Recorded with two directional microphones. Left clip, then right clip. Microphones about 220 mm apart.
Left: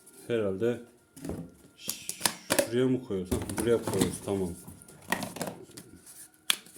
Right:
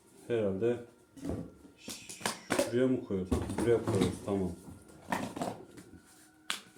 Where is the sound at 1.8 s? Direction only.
40° left (ahead or behind).